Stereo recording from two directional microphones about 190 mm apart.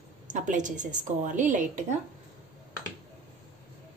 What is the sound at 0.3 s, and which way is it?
A woman's voice, 40° right (ahead or behind).